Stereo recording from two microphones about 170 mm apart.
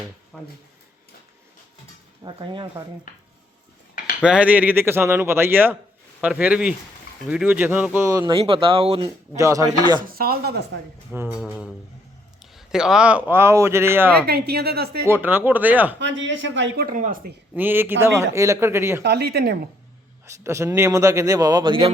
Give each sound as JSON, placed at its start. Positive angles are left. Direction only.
{"t": 0.3, "sound": "speech", "side_deg": 5}
{"t": 2.2, "sound": "speech", "side_deg": -30}
{"t": 4.2, "sound": "speech", "side_deg": -5}
{"t": 8.3, "sound": "speech", "side_deg": -30}
{"t": 9.3, "sound": "speech", "side_deg": -20}
{"t": 10.1, "sound": "speech", "side_deg": -65}
{"t": 11.1, "sound": "speech", "side_deg": -15}
{"t": 12.5, "sound": "speech", "side_deg": -5}
{"t": 14.3, "sound": "a woman's voice", "side_deg": -70}
{"t": 15.0, "sound": "speech", "side_deg": -10}
{"t": 16.0, "sound": "speech", "side_deg": -90}
{"t": 17.5, "sound": "speech", "side_deg": -10}
{"t": 19.0, "sound": "a woman's voice", "side_deg": -70}
{"t": 20.4, "sound": "speech", "side_deg": -15}